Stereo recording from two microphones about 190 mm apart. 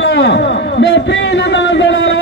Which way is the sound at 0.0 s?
65° left (ahead or behind).